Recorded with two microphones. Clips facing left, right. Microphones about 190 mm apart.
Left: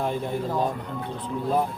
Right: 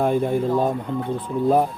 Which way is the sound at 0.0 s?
50° right (ahead or behind).